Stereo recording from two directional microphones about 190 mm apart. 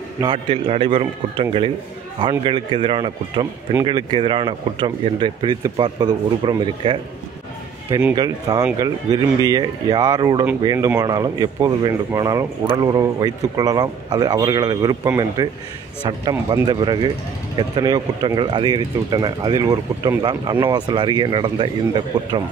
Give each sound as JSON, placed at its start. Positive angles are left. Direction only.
{"t": 0.2, "sound": "speech", "side_deg": -25}
{"t": 8.1, "sound": "speech", "side_deg": -20}